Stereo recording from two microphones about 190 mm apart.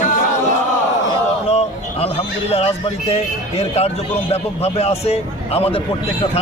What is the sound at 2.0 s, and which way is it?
Speech, 30° left (ahead or behind).